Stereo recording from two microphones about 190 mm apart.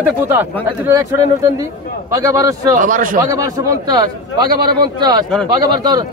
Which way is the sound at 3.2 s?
15° right (ahead or behind).